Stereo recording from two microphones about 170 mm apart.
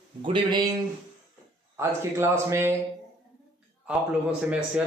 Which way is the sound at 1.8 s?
15° right (ahead or behind).